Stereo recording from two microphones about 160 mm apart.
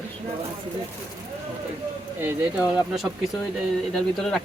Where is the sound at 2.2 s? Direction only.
10° right (ahead or behind).